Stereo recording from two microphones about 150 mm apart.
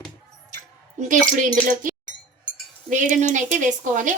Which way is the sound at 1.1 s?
60° right (ahead or behind).